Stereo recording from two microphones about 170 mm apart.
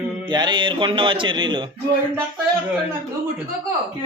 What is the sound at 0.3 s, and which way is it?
Speech, 25° right (ahead or behind).